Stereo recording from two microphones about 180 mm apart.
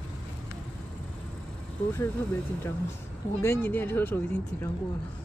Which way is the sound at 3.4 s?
10° left (ahead or behind).